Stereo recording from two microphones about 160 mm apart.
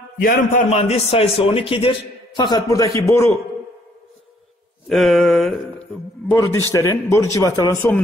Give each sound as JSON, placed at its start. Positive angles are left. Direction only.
{"t": 0.2, "sound": "a man's voice", "side_deg": 55}
{"t": 4.8, "sound": "mantra", "side_deg": 0}
{"t": 6.3, "sound": "a man's voice", "side_deg": 20}